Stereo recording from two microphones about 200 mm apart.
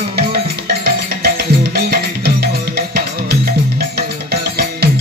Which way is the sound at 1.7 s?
55° right (ahead or behind).